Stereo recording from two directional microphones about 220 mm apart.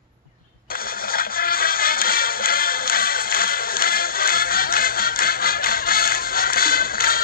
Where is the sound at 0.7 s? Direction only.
40° left (ahead or behind).